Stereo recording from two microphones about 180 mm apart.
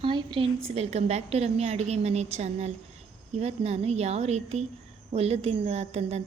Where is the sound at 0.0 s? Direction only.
25° right (ahead or behind).